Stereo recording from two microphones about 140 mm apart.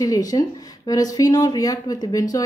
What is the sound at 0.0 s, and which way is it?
Speech, 25° left (ahead or behind).